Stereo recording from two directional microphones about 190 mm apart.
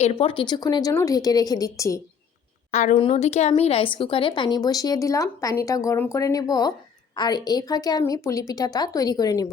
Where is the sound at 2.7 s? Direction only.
40° left (ahead or behind).